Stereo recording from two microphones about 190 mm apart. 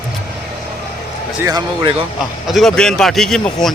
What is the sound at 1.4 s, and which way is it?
Speech, 20° right (ahead or behind).